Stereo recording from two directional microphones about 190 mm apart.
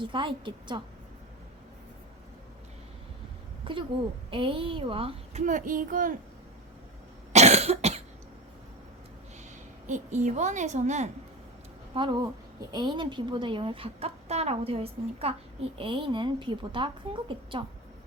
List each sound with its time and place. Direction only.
0.0 s a woman's voice: 25° right (ahead or behind)
3.6 s a woman's voice: 25° right (ahead or behind); by 6.1 s 45° right (ahead or behind)
7.3 s cough: 35° right (ahead or behind)
9.8 s a woman's voice: 40° right (ahead or behind)
11.9 s a woman's voice: 25° right (ahead or behind)